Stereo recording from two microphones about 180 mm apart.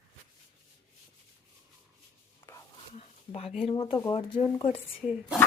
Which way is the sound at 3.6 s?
35° left (ahead or behind).